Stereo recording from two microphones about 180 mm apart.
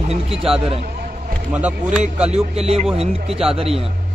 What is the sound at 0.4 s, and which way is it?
Speech, 30° right (ahead or behind).